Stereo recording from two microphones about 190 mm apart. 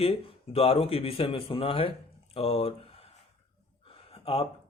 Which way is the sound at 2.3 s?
30° left (ahead or behind).